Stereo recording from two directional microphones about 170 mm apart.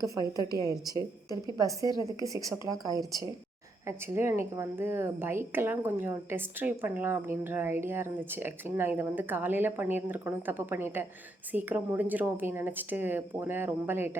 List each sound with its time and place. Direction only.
0.0 s a woman's voice: 20° right (ahead or behind)